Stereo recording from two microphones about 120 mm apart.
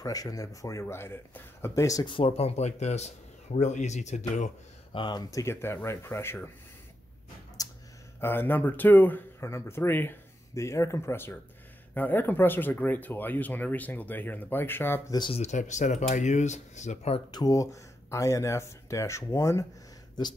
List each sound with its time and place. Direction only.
0.0 s speech: 30° left (ahead or behind)
2.0 s speech: 50° left (ahead or behind); by 4.5 s 75° left (ahead or behind)
4.9 s speech: 35° left (ahead or behind); by 6.5 s 20° left (ahead or behind)
7.6 s a sound: 30° left (ahead or behind)
8.2 s speech: 20° left (ahead or behind)
15.0 s speech: 35° left (ahead or behind)
15.3 s speech: 75° left (ahead or behind)
17.3 s speech: 30° left (ahead or behind)